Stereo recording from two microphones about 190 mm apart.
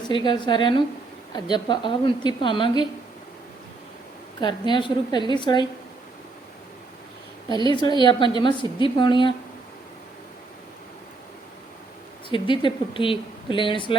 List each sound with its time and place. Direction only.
0.1 s speech: 25° left (ahead or behind)
4.4 s speech: 25° left (ahead or behind)
7.5 s speech: 25° right (ahead or behind)
8.0 s speech: 25° left (ahead or behind)
12.3 s speech: 25° left (ahead or behind)